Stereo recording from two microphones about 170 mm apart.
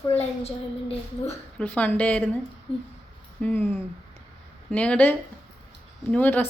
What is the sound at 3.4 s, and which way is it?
A woman's voice, 10° left (ahead or behind).